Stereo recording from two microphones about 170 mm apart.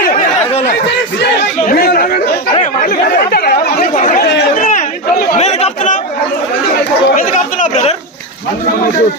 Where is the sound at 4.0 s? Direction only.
45° left (ahead or behind).